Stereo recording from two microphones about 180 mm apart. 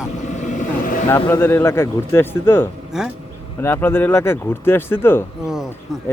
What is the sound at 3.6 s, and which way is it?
Speech, 15° left (ahead or behind).